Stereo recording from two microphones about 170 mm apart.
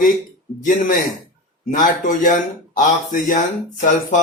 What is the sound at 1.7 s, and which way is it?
Speech, 55° left (ahead or behind).